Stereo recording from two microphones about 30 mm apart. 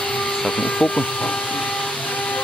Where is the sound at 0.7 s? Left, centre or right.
Left.